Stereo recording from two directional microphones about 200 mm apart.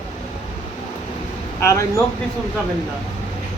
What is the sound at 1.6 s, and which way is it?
Speech, 15° left (ahead or behind).